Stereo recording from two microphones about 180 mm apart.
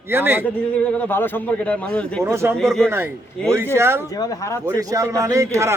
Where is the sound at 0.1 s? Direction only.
10° right (ahead or behind).